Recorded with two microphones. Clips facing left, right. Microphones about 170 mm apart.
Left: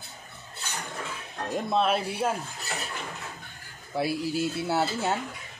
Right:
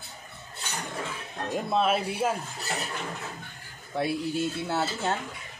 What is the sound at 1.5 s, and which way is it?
Speech, centre (ahead or behind).